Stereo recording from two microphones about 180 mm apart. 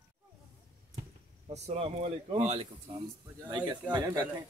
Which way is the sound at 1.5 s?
35° right (ahead or behind).